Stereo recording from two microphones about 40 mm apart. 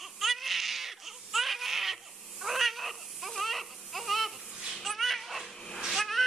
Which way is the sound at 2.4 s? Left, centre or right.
Centre.